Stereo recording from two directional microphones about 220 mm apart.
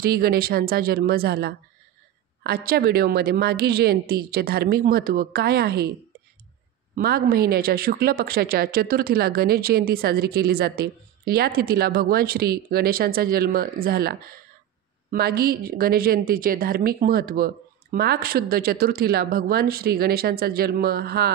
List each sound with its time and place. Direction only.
0.0 s speech: 45° right (ahead or behind)
7.0 s speech: 45° right (ahead or behind)